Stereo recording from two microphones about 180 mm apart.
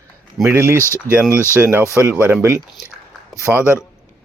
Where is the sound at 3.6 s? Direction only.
15° left (ahead or behind).